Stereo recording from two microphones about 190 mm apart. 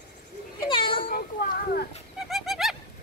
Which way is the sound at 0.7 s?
25° left (ahead or behind).